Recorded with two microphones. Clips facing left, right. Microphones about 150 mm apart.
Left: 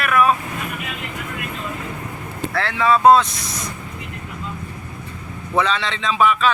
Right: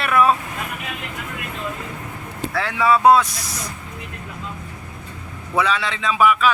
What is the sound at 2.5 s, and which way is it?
Speech, 10° right (ahead or behind).